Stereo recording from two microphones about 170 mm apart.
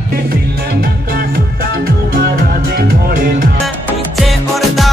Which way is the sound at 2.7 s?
55° right (ahead or behind).